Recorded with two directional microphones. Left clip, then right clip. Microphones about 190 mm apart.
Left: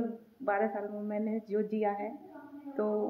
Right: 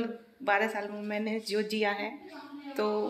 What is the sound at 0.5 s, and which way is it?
Speech, 5° right (ahead or behind).